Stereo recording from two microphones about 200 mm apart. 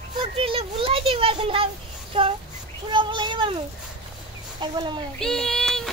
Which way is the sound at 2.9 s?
25° right (ahead or behind).